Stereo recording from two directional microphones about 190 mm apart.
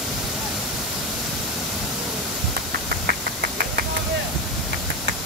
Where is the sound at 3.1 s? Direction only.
60° right (ahead or behind).